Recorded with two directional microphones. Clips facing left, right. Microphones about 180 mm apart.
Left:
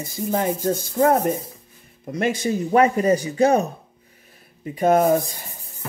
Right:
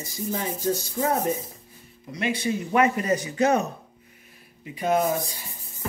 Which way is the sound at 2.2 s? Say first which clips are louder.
Left 4 dB; 45° left (ahead or behind).